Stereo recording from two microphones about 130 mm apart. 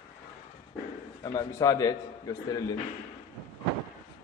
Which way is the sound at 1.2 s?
30° left (ahead or behind).